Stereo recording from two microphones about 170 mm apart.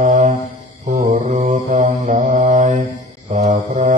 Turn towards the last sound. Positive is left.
turn(degrees=-40)  # may be behind; listen again after turning